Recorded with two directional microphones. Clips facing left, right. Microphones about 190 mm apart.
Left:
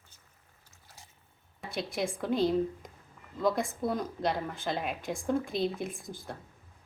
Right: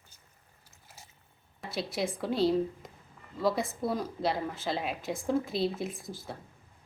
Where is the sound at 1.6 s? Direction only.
Centre (ahead or behind).